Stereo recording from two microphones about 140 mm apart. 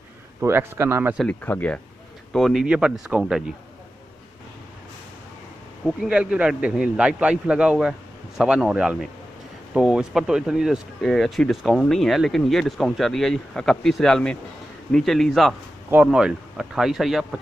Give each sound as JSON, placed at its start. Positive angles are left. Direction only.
{"t": 0.4, "sound": "a man's voice", "side_deg": -15}
{"t": 1.4, "sound": "speech", "side_deg": 10}
{"t": 2.3, "sound": "speech", "side_deg": 0}
{"t": 5.9, "sound": "a man's voice", "side_deg": -5}
{"t": 15.9, "sound": "speech", "side_deg": -10}